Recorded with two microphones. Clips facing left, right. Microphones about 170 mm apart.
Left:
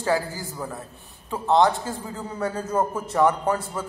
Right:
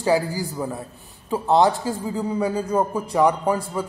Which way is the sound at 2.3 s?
10° right (ahead or behind).